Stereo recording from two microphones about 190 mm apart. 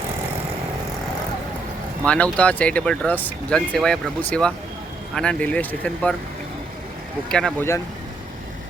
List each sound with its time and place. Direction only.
2.0 s speech: 5° left (ahead or behind)
7.3 s speech: 5° left (ahead or behind)